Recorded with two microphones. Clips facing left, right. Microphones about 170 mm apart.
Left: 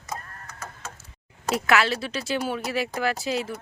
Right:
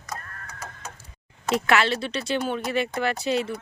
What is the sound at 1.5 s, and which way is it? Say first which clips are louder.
Speech: right 1 dB; centre (ahead or behind).